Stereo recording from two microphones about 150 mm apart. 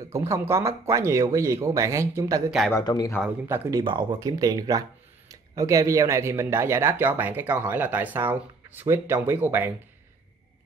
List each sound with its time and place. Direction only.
0.1 s speech: 20° right (ahead or behind)
2.7 s a man's voice: 25° left (ahead or behind)
3.2 s speech: 15° right (ahead or behind)
3.8 s speech: 30° right (ahead or behind); by 9.7 s 15° right (ahead or behind)